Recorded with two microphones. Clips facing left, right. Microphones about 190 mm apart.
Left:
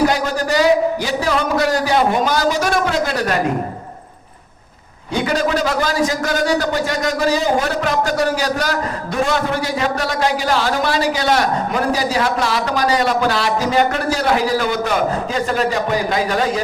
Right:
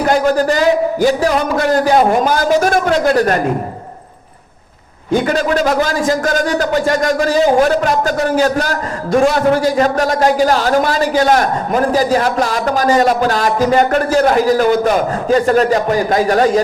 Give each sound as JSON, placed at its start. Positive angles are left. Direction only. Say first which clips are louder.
{"t": 0.1, "sound": "a man's voice", "louder": "right 6 dB", "side_deg": -50}
{"t": 5.1, "sound": "a man's voice", "louder": "right 4 dB", "side_deg": -50}